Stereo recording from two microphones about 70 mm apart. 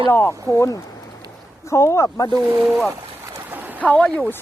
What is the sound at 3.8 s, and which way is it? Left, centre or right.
Speech, centre.